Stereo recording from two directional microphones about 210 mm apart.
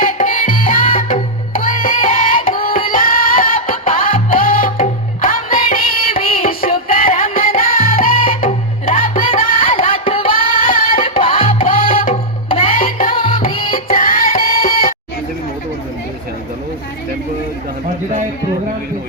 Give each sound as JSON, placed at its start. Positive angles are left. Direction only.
{"t": 0.0, "sound": "music", "side_deg": 35}
{"t": 9.8, "sound": "music", "side_deg": 25}
{"t": 11.6, "sound": "music", "side_deg": 40}
{"t": 13.1, "sound": "music", "side_deg": 25}
{"t": 13.8, "sound": "music", "side_deg": 40}